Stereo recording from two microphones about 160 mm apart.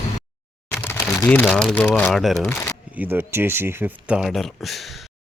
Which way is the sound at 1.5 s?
5° left (ahead or behind).